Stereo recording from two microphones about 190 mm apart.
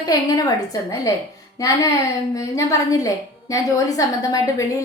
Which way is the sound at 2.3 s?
15° left (ahead or behind).